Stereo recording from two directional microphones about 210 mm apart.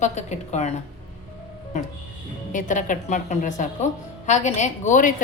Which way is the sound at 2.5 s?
35° left (ahead or behind).